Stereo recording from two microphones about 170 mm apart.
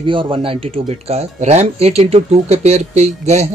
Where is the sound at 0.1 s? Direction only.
30° right (ahead or behind).